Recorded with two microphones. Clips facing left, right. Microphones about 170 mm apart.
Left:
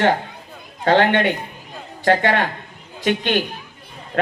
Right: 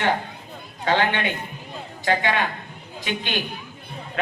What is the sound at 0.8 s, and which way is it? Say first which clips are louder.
A man's voice: left 6 dB; 55° left (ahead or behind).